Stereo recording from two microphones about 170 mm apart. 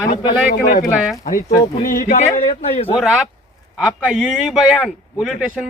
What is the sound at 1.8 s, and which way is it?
Speech, 45° left (ahead or behind).